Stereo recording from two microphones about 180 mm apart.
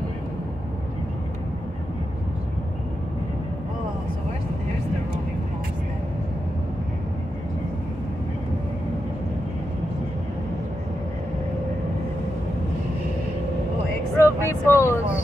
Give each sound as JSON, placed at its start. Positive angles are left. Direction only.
{"t": 14.1, "sound": "vehicle", "side_deg": 15}